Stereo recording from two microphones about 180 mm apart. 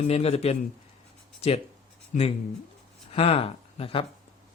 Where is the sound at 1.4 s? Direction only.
35° left (ahead or behind).